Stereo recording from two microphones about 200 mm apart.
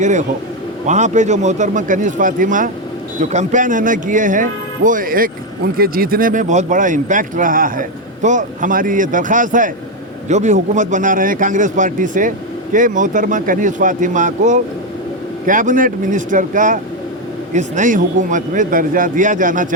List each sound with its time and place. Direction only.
0.0 s speech: 35° right (ahead or behind)